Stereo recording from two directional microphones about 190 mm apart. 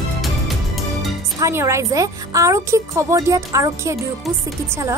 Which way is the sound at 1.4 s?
15° right (ahead or behind).